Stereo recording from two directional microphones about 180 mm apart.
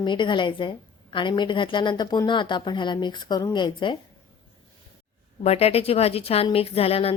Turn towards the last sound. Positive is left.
turn(degrees=30)  # may be behind; listen again after turning